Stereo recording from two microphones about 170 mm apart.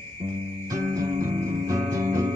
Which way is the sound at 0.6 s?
20° right (ahead or behind).